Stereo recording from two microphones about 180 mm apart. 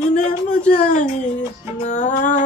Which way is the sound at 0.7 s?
45° left (ahead or behind).